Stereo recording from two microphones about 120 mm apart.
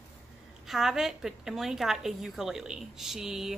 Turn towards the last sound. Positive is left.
turn(degrees=-5)  # may be behind; listen again after turning